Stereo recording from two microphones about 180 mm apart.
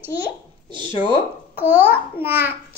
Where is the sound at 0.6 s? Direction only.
25° right (ahead or behind).